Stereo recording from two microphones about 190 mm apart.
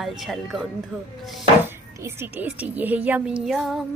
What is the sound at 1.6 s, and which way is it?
Speech, 10° right (ahead or behind).